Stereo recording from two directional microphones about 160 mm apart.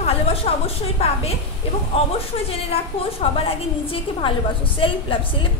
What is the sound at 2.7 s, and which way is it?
A woman's voice, 35° left (ahead or behind).